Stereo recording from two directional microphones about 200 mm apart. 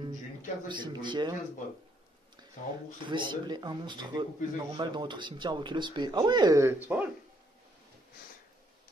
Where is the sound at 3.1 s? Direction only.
25° right (ahead or behind).